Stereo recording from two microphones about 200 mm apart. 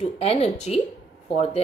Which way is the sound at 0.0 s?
35° left (ahead or behind).